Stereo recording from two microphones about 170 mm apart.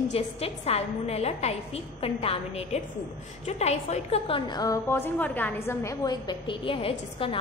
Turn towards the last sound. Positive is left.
turn(degrees=30)  # may be behind; listen again after turning